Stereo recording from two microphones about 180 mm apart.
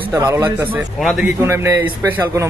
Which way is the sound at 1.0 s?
Centre (ahead or behind).